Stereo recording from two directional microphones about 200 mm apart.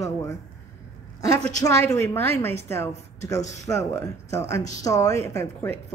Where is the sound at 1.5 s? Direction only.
15° left (ahead or behind).